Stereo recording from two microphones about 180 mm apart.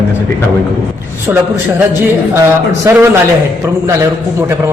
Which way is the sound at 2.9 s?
15° right (ahead or behind).